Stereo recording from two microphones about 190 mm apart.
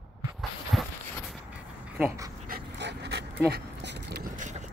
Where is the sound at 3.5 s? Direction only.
55° right (ahead or behind).